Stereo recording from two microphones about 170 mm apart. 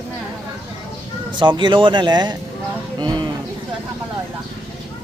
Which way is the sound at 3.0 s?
25° right (ahead or behind).